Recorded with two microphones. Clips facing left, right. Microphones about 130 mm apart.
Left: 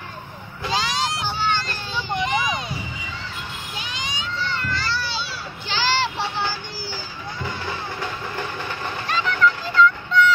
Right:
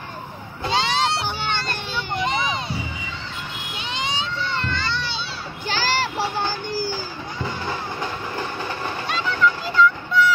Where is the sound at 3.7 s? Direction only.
30° right (ahead or behind).